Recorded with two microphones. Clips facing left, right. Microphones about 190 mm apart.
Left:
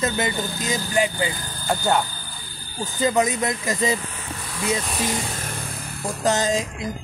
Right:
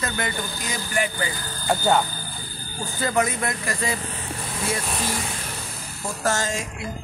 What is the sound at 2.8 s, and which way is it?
Speech, 15° left (ahead or behind).